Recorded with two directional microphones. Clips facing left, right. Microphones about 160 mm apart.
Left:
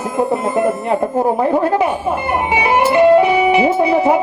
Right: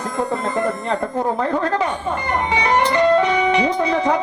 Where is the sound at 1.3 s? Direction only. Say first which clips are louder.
Left 5 dB; 15° left (ahead or behind).